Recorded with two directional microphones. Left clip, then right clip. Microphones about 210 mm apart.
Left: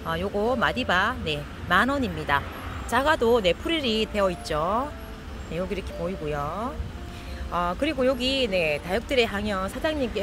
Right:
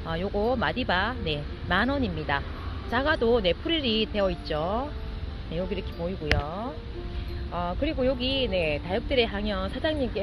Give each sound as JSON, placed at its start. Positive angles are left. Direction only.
{"t": 0.0, "sound": "speech", "side_deg": 10}